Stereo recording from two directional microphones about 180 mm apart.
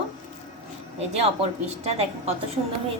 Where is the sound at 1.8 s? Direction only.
35° right (ahead or behind).